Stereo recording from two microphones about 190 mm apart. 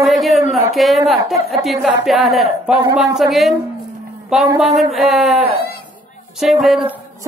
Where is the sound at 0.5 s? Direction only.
Centre (ahead or behind).